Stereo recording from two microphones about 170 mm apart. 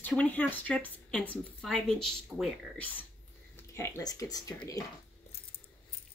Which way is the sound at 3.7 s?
15° left (ahead or behind).